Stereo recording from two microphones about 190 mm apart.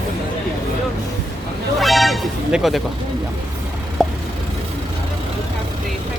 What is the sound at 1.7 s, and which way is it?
Music, centre (ahead or behind).